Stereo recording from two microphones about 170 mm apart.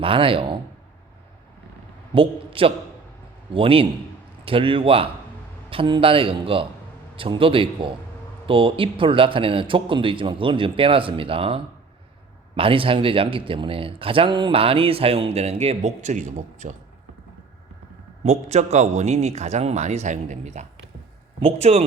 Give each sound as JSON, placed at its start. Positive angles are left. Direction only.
{"t": 0.0, "sound": "speech", "side_deg": -30}
{"t": 2.1, "sound": "a man's voice", "side_deg": -30}
{"t": 18.2, "sound": "speech", "side_deg": -40}